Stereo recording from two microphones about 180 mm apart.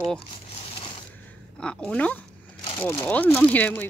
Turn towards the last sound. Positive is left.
turn(degrees=10)  # may be behind; listen again after turning